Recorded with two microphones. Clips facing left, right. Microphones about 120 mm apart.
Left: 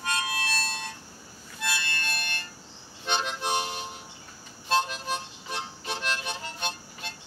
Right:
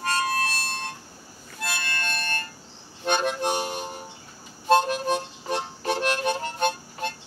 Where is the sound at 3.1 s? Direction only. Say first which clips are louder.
Right 5 dB; 50° right (ahead or behind).